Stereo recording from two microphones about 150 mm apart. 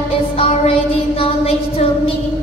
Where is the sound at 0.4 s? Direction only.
40° left (ahead or behind).